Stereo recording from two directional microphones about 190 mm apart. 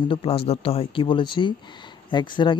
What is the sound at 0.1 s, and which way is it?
Speech, 30° left (ahead or behind).